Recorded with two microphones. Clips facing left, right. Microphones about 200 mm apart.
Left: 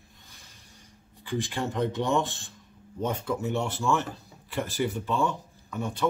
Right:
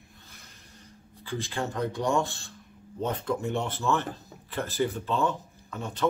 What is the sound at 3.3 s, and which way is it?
Speech, 5° left (ahead or behind).